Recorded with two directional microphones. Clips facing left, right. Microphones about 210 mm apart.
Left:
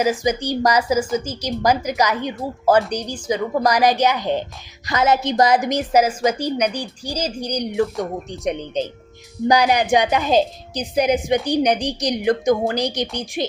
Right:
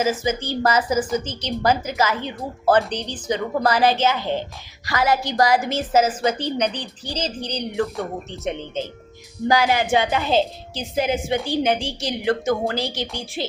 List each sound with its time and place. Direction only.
0.0 s a woman's voice: 15° left (ahead or behind)